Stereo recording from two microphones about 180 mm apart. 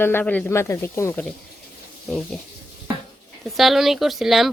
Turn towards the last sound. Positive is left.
turn(degrees=0)  # may be behind; listen again after turning